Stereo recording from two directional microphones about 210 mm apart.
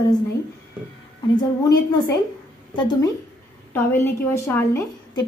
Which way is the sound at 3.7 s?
10° left (ahead or behind).